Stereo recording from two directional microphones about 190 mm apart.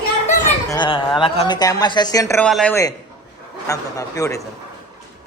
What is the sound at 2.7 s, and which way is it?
A man's voice, 15° left (ahead or behind).